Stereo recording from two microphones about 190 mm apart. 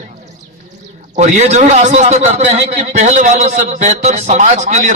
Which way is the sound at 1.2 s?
40° right (ahead or behind).